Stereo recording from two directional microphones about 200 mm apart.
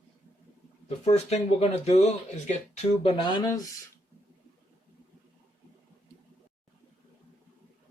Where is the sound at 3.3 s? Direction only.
20° left (ahead or behind).